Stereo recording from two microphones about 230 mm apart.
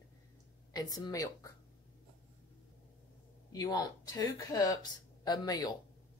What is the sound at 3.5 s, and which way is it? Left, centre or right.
Speech, centre.